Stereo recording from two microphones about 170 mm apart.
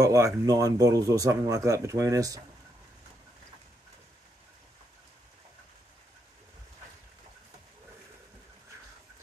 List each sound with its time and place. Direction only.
0.0 s speech: 20° right (ahead or behind)